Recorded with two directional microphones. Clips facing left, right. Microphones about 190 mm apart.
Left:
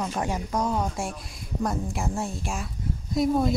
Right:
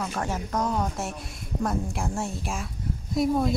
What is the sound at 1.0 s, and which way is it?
A woman's voice, centre (ahead or behind).